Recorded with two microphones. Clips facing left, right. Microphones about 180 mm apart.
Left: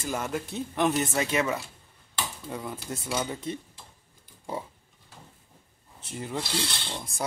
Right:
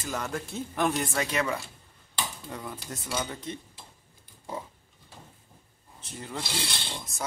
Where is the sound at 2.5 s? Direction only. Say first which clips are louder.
Left 3 dB; 10° left (ahead or behind).